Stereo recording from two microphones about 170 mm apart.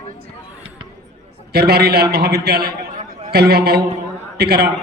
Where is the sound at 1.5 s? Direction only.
70° right (ahead or behind).